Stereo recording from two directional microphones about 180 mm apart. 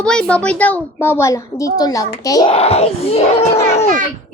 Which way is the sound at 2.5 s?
35° left (ahead or behind).